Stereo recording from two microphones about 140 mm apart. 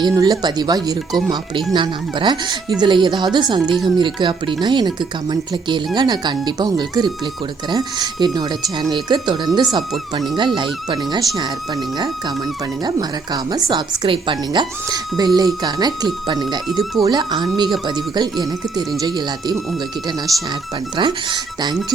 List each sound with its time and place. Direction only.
0.1 s speech: 30° right (ahead or behind)
9.5 s speech: centre (ahead or behind)
10.3 s speech: 35° right (ahead or behind)
12.8 s speech: 30° right (ahead or behind)
20.9 s speech: 35° right (ahead or behind)